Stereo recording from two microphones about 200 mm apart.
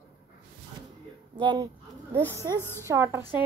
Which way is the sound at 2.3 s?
15° right (ahead or behind).